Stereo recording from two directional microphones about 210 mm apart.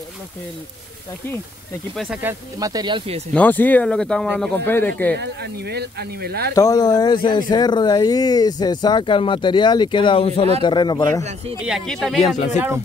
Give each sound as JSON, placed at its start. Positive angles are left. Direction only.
{"t": 2.0, "sound": "speech", "side_deg": -5}
{"t": 2.6, "sound": "speech", "side_deg": -20}
{"t": 3.3, "sound": "speech", "side_deg": 10}
{"t": 5.1, "sound": "speech", "side_deg": -50}
{"t": 6.5, "sound": "speech", "side_deg": 15}
{"t": 11.6, "sound": "speech", "side_deg": 0}
{"t": 12.2, "sound": "speech", "side_deg": 35}